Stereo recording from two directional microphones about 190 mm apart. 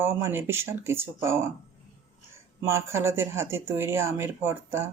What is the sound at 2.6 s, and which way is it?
Speech, 15° right (ahead or behind).